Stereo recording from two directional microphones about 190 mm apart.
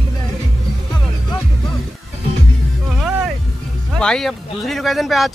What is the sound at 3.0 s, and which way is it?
Music, 5° right (ahead or behind).